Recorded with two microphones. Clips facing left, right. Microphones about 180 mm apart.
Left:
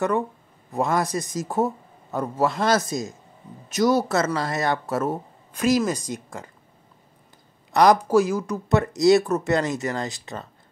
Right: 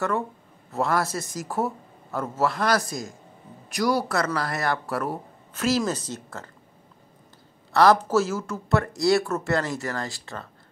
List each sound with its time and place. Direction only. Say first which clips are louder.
0.7 s speech: left 2 dB; 15° left (ahead or behind)
7.7 s speech: left 2 dB; 15° left (ahead or behind)